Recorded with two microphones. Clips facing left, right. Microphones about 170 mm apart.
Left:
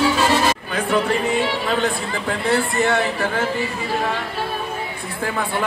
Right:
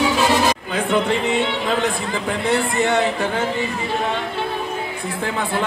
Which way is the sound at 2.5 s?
20° right (ahead or behind).